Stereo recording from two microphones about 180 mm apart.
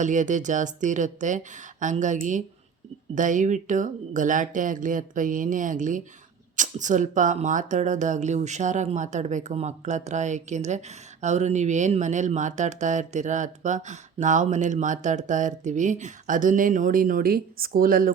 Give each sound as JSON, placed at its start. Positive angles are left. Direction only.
{"t": 0.0, "sound": "speech", "side_deg": -45}